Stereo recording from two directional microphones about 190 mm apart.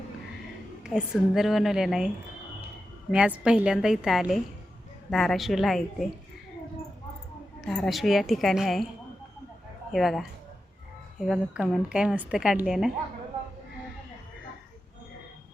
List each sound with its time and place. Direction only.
0.9 s a woman's voice: 5° right (ahead or behind)
3.1 s a woman's voice: 5° right (ahead or behind)
7.7 s a woman's voice: centre (ahead or behind)
9.9 s a woman's voice: centre (ahead or behind)